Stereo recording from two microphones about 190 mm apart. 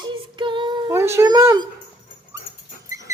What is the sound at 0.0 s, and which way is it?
Child singing, 25° right (ahead or behind).